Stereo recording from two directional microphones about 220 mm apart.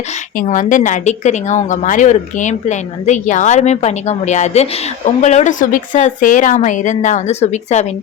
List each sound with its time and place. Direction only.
0.3 s a woman's voice: 35° left (ahead or behind)